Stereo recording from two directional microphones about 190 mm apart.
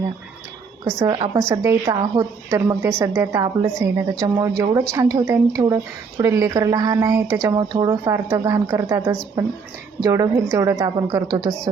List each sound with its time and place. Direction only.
0.9 s a woman's voice: 20° right (ahead or behind)